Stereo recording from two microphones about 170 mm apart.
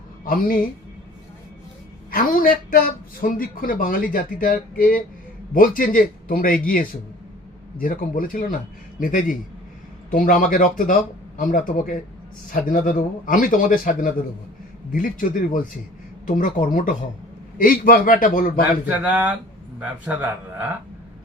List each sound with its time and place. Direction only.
0.3 s speech: 55° left (ahead or behind)
2.0 s speech: 55° left (ahead or behind)
18.9 s speech: 10° right (ahead or behind)